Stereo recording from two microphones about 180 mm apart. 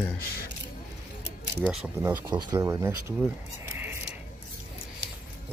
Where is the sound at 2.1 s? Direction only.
20° right (ahead or behind).